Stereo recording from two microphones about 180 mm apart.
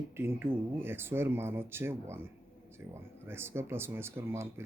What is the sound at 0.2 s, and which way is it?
Speech, 10° right (ahead or behind).